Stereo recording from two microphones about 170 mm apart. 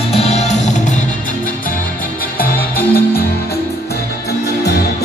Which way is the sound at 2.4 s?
60° left (ahead or behind).